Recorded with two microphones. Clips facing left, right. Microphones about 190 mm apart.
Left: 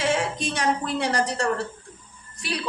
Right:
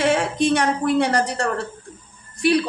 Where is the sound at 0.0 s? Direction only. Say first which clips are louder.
Right 6 dB; 60° right (ahead or behind).